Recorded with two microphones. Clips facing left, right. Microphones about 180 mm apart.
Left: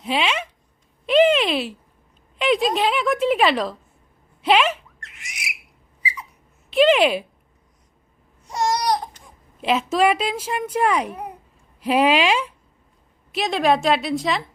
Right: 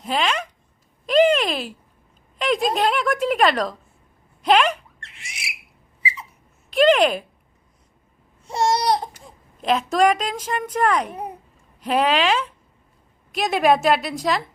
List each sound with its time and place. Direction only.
0.0 s speech: 5° left (ahead or behind)
1.0 s a sound: centre (ahead or behind)
2.4 s a woman's voice: centre (ahead or behind)
4.9 s bird: 30° right (ahead or behind)
6.0 s a sound: 25° right (ahead or behind)
6.7 s a woman's voice: 5° left (ahead or behind)
8.4 s babbling: 25° right (ahead or behind)
9.6 s a woman's voice: 5° left (ahead or behind)
13.3 s a woman's voice: centre (ahead or behind)